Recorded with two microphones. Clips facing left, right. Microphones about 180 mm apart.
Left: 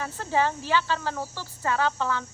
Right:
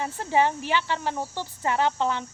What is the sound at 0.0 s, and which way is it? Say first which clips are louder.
A woman's voice: right 2 dB; 15° right (ahead or behind).